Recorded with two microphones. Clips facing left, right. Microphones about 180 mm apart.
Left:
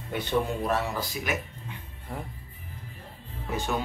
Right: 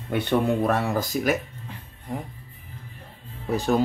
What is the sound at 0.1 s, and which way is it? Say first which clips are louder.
Speech: right 5 dB; 60° right (ahead or behind).